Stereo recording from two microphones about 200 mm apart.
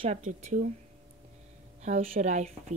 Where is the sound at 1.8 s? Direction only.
40° right (ahead or behind).